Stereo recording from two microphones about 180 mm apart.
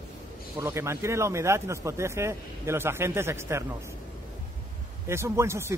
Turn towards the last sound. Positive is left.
turn(degrees=-15)  # may be behind; listen again after turning